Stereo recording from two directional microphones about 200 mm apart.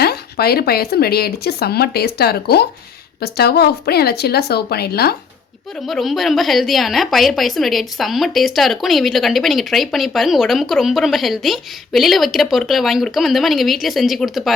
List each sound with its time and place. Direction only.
0.0 s speech: 50° left (ahead or behind)
5.8 s a woman's voice: centre (ahead or behind)